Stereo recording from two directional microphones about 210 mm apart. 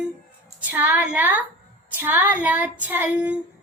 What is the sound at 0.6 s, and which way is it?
A woman's voice, 10° right (ahead or behind).